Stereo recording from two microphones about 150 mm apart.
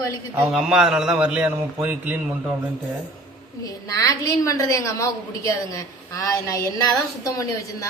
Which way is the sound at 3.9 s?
20° left (ahead or behind).